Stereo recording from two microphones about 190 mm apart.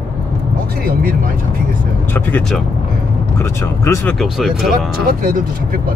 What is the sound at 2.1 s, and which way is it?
Speech, 10° left (ahead or behind).